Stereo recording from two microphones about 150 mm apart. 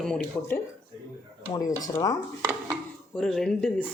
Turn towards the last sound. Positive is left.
turn(degrees=0)  # may be behind; listen again after turning